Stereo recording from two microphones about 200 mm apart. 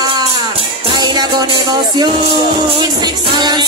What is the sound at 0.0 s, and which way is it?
Music, 20° right (ahead or behind).